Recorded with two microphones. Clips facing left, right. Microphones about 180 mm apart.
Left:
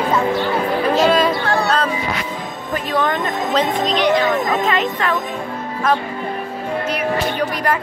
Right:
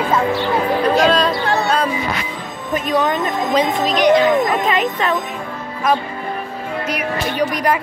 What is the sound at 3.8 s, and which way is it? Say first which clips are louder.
Speech: right 5 dB; 10° right (ahead or behind).